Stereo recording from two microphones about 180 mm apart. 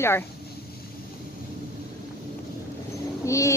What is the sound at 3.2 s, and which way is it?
Speech, 15° left (ahead or behind).